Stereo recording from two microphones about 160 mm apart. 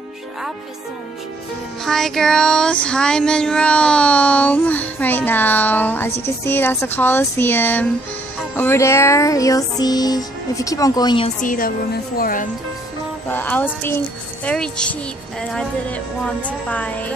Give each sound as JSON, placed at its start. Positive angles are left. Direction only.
{"t": 1.9, "sound": "child singing", "side_deg": 0}
{"t": 8.5, "sound": "music", "side_deg": 15}
{"t": 11.4, "sound": "speech", "side_deg": 60}
{"t": 13.3, "sound": "child singing", "side_deg": 10}
{"t": 15.4, "sound": "speech", "side_deg": 5}
{"t": 16.4, "sound": "child singing", "side_deg": 10}